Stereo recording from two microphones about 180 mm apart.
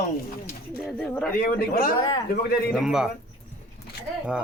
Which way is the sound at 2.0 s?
25° left (ahead or behind).